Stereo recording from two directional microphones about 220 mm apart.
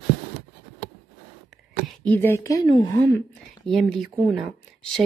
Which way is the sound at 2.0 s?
10° left (ahead or behind).